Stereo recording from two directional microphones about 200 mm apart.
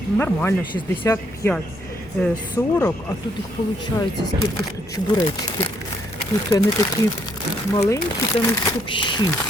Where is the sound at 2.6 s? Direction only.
10° left (ahead or behind).